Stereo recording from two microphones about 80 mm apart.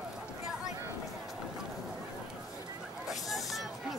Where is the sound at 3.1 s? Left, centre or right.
Centre.